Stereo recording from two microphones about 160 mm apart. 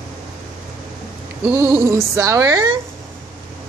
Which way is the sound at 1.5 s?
15° right (ahead or behind).